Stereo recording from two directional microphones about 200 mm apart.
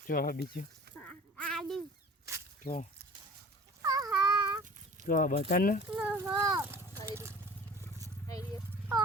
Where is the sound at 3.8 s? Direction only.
20° right (ahead or behind).